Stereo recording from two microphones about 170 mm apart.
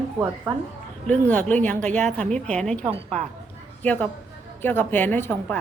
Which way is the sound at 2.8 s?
40° right (ahead or behind).